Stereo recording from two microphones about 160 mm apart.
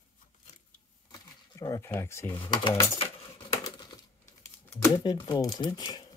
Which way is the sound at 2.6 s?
30° left (ahead or behind).